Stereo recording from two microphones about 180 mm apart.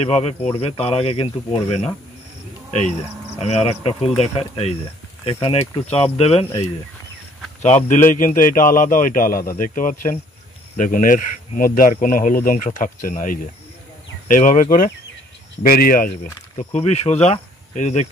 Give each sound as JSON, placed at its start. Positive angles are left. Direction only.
{"t": 0.0, "sound": "speech", "side_deg": 35}
{"t": 3.3, "sound": "speech", "side_deg": 35}
{"t": 7.9, "sound": "speech", "side_deg": 45}
{"t": 16.5, "sound": "speech", "side_deg": 35}